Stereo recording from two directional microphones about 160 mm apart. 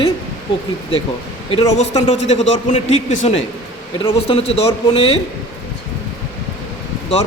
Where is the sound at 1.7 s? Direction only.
45° left (ahead or behind).